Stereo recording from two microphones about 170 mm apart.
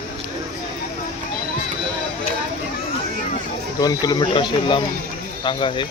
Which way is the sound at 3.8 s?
25° left (ahead or behind).